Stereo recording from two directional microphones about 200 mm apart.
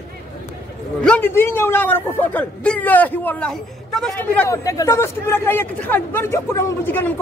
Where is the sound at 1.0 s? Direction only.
5° left (ahead or behind).